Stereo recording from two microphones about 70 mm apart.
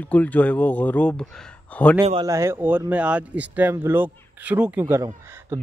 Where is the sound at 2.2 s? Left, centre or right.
Right.